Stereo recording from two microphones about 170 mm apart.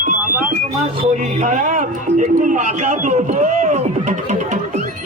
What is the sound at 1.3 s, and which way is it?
A man's voice, 45° right (ahead or behind).